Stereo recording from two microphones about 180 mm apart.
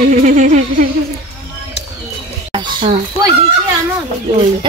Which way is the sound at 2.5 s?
25° right (ahead or behind).